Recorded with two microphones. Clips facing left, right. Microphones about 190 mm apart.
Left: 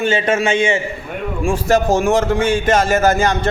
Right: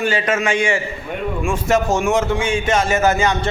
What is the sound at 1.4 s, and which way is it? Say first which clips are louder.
Speech: left 3 dB; 35° left (ahead or behind).